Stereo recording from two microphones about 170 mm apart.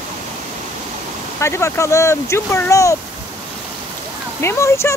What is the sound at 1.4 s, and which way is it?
Speech, 15° left (ahead or behind).